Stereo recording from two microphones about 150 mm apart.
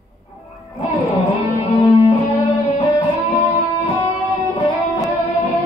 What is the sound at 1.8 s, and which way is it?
Music, 50° left (ahead or behind).